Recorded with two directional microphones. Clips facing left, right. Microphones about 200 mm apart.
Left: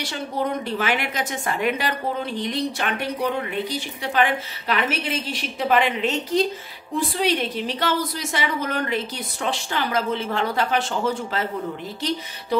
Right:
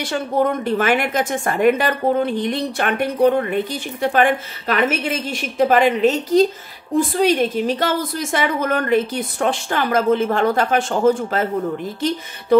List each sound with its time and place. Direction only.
0.0 s a woman's voice: 50° right (ahead or behind)